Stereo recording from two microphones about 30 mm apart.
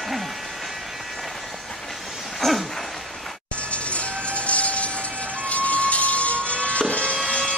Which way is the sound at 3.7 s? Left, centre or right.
Left.